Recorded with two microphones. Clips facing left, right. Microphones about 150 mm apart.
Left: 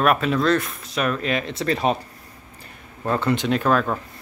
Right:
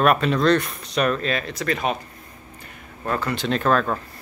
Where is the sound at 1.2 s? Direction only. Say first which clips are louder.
Left 1 dB; 20° left (ahead or behind).